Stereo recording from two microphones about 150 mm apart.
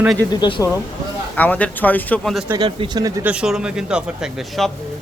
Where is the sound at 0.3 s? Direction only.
35° left (ahead or behind).